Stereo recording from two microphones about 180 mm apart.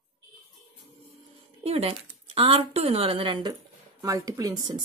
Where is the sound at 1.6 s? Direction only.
35° right (ahead or behind).